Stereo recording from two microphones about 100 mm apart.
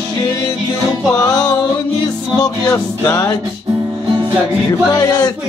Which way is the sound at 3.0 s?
30° left (ahead or behind).